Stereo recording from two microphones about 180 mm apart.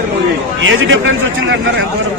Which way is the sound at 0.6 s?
90° right.